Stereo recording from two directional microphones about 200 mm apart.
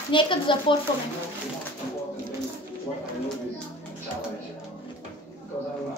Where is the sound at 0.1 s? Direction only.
25° left (ahead or behind).